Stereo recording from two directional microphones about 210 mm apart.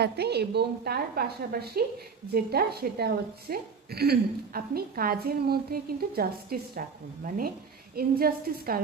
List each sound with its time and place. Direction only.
0.0 s a woman's voice: 50° right (ahead or behind)